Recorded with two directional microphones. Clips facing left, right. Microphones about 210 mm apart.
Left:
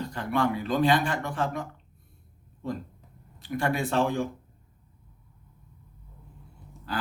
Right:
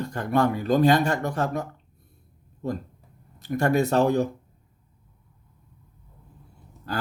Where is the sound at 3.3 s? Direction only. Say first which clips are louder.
Right 6 dB; 45° right (ahead or behind).